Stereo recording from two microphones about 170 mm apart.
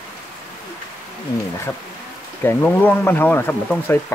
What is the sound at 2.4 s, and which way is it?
Speech, 15° left (ahead or behind).